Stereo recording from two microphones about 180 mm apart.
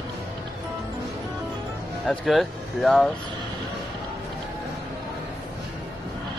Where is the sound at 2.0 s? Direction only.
Centre (ahead or behind).